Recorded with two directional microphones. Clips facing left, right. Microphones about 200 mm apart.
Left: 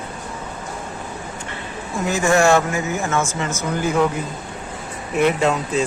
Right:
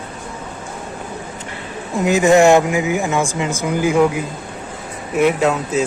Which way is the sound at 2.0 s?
15° right (ahead or behind).